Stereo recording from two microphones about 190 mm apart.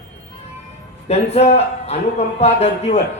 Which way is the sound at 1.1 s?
35° left (ahead or behind).